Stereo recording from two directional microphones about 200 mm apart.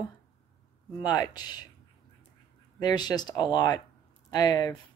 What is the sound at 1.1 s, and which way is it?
Speech, 20° left (ahead or behind).